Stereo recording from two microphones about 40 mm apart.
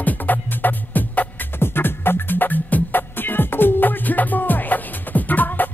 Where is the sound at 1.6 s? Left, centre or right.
Left.